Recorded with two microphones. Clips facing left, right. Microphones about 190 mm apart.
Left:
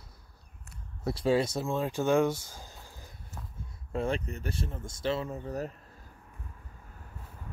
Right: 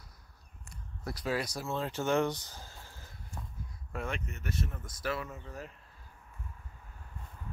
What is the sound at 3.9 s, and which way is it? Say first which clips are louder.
Speech: left 7 dB; 30° left (ahead or behind).